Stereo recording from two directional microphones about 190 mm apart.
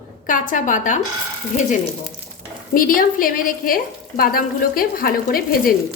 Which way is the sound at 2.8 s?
45° left (ahead or behind).